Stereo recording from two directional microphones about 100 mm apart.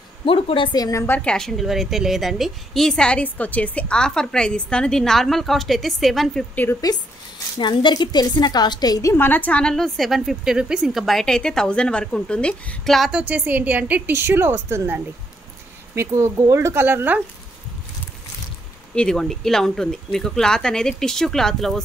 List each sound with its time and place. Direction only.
0.2 s speech: 60° left (ahead or behind)
0.7 s a woman's voice: 40° left (ahead or behind)
1.0 s a woman's voice: 20° left (ahead or behind)
1.3 s a woman's voice: 5° left (ahead or behind)
6.5 s a woman's voice: 20° left (ahead or behind)
7.5 s a woman's voice: 50° left (ahead or behind)
9.1 s a woman's voice: 20° left (ahead or behind); by 13.1 s centre (ahead or behind)
13.3 s a woman's voice: 15° right (ahead or behind)
18.9 s a woman's voice: 5° left (ahead or behind)